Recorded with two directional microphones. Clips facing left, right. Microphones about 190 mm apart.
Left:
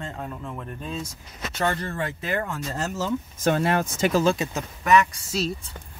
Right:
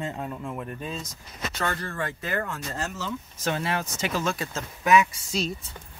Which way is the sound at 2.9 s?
50° left (ahead or behind).